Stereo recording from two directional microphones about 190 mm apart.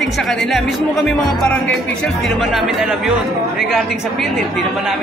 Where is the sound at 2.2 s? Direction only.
Centre (ahead or behind).